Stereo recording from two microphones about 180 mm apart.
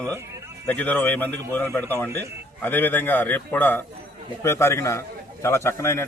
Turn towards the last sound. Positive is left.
turn(degrees=15)  # may be behind; listen again after turning